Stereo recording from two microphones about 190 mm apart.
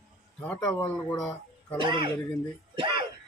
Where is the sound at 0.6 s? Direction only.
10° left (ahead or behind).